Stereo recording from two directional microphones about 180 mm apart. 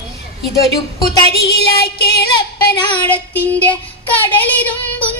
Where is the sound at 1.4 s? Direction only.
65° left (ahead or behind).